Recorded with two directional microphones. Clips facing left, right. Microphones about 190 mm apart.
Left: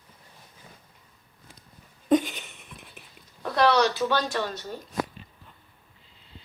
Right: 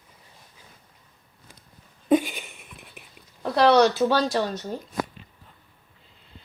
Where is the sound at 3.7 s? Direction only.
50° right (ahead or behind).